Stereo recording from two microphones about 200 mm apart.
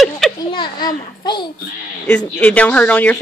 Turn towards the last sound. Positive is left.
turn(degrees=5)  # may be behind; listen again after turning